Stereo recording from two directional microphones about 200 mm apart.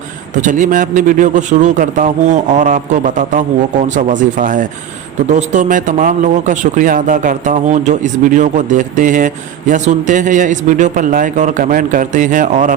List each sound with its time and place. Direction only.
0.4 s speech: 40° right (ahead or behind)